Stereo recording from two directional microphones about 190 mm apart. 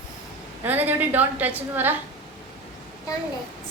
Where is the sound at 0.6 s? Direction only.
10° right (ahead or behind).